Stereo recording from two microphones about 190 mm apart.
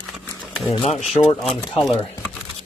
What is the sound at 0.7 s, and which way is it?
Speech, 25° left (ahead or behind).